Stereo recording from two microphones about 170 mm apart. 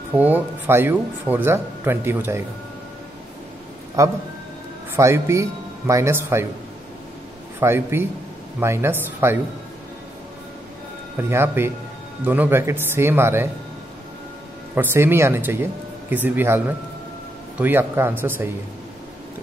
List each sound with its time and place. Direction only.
0.1 s speech: 10° right (ahead or behind)
4.0 s a man's voice: 20° right (ahead or behind)
7.6 s speech: 15° right (ahead or behind)
11.1 s speech: 15° right (ahead or behind)
14.8 s speech: 10° right (ahead or behind)